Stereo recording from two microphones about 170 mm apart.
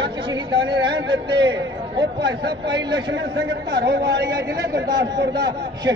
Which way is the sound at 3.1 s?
85° right.